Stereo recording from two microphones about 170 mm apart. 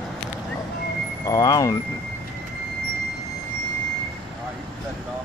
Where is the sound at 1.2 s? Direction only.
20° left (ahead or behind).